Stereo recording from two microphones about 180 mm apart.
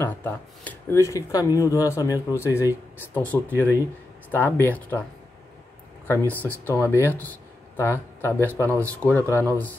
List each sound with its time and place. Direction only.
0.0 s speech: 10° left (ahead or behind)
6.0 s speech: 10° left (ahead or behind)